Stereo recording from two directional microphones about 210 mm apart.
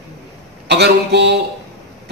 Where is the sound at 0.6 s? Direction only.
55° right (ahead or behind).